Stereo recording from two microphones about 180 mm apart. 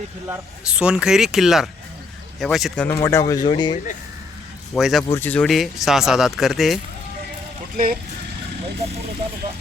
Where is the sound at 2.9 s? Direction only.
15° left (ahead or behind).